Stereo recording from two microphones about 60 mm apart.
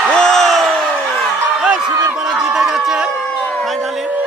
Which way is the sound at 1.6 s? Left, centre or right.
Centre.